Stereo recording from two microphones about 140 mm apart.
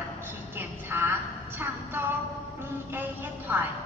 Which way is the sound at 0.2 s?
15° right (ahead or behind).